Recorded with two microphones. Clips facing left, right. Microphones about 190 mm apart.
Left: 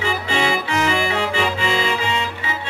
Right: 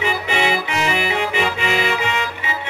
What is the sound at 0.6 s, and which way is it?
Music, 20° right (ahead or behind).